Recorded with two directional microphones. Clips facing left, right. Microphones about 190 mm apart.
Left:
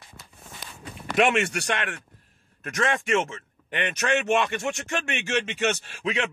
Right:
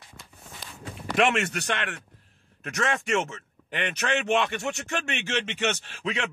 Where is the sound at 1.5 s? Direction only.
10° left (ahead or behind).